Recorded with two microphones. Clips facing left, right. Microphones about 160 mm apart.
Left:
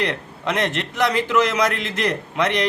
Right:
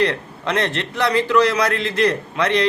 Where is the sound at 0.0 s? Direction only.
15° left (ahead or behind).